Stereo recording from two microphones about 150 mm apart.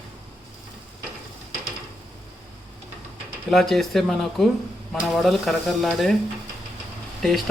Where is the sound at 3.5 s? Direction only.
Centre (ahead or behind).